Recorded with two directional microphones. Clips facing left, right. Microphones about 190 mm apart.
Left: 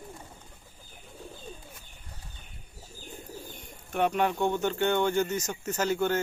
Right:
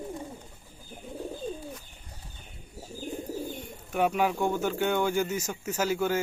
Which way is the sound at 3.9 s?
5° right (ahead or behind).